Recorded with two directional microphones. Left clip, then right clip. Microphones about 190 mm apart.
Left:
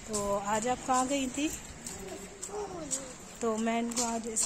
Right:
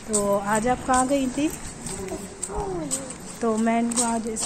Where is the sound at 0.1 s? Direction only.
15° left (ahead or behind).